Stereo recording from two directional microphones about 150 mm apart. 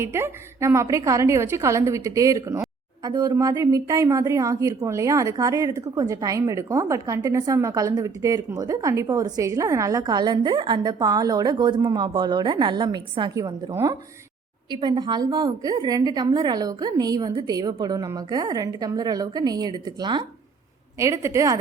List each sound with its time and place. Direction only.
0.0 s a woman's voice: 15° right (ahead or behind)
21.0 s a woman's voice: 20° right (ahead or behind)